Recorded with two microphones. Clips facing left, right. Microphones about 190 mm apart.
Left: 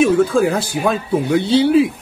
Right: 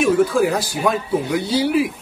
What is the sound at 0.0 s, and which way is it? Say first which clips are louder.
A man's voice: left 2 dB; 25° left (ahead or behind).